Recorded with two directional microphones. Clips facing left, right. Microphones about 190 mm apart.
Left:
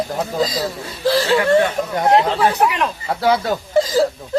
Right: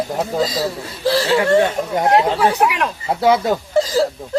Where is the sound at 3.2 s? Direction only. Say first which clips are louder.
Right 2 dB; 20° right (ahead or behind).